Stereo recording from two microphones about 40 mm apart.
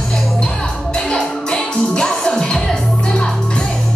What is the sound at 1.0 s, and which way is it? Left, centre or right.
Music, centre.